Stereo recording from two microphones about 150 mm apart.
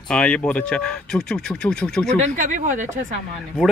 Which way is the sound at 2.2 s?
60° right (ahead or behind).